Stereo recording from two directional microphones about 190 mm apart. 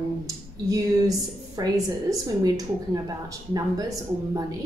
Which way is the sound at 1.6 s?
20° right (ahead or behind).